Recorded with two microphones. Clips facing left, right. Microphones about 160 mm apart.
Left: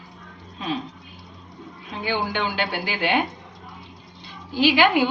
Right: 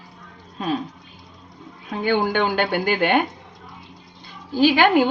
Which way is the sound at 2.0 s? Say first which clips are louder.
Right 5 dB; 50° right (ahead or behind).